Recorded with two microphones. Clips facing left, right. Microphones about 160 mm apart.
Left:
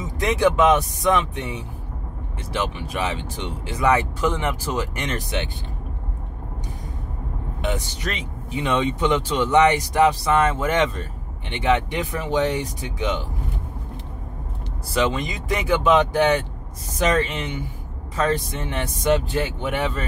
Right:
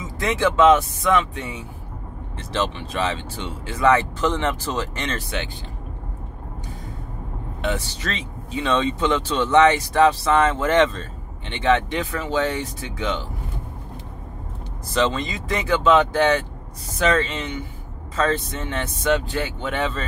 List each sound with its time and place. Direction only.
0.0 s speech: 15° left (ahead or behind)
2.3 s speech: 10° left (ahead or behind)
7.6 s speech: 15° left (ahead or behind)
15.0 s speech: 15° left (ahead or behind)